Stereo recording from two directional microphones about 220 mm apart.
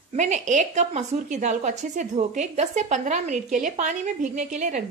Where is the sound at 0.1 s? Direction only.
35° right (ahead or behind).